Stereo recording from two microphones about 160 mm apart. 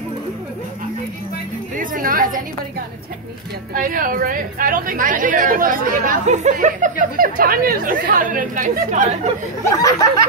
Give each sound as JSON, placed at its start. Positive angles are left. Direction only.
{"t": 1.8, "sound": "chatter", "side_deg": -60}
{"t": 3.7, "sound": "a woman's voice", "side_deg": -60}
{"t": 9.8, "sound": "speech", "side_deg": 20}